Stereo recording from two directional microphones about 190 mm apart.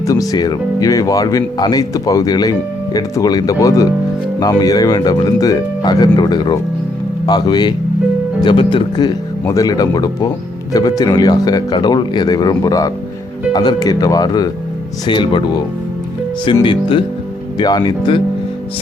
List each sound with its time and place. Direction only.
0.0 s speech: 20° left (ahead or behind)